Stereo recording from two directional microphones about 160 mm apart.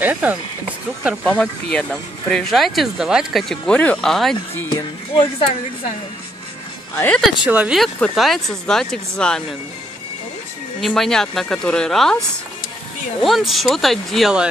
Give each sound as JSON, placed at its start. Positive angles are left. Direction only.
{"t": 0.0, "sound": "speech", "side_deg": -10}
{"t": 1.2, "sound": "speech", "side_deg": 5}
{"t": 4.6, "sound": "speech", "side_deg": 35}
{"t": 7.0, "sound": "speech", "side_deg": 5}
{"t": 10.8, "sound": "speech", "side_deg": 0}
{"t": 13.2, "sound": "speech", "side_deg": 0}